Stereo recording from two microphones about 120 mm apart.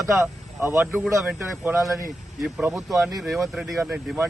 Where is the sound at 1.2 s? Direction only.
Centre (ahead or behind).